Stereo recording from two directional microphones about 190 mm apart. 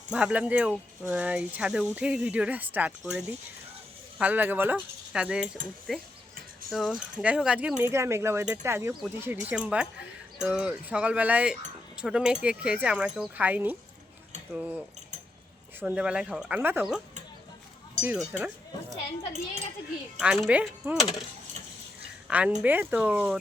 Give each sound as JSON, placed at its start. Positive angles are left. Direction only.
{"t": 0.1, "sound": "speech", "side_deg": -5}
{"t": 15.8, "sound": "speech", "side_deg": -5}
{"t": 18.0, "sound": "speech", "side_deg": -5}
{"t": 20.1, "sound": "speech", "side_deg": 0}
{"t": 22.3, "sound": "speech", "side_deg": -10}